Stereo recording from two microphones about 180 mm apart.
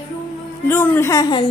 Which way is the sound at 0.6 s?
10° left (ahead or behind).